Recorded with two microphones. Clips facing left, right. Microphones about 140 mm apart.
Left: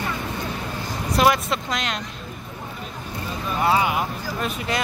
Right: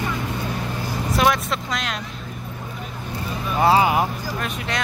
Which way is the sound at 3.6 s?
35° right (ahead or behind).